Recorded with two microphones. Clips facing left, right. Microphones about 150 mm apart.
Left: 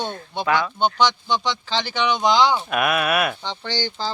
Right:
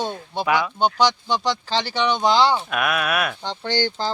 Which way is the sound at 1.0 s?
35° right (ahead or behind).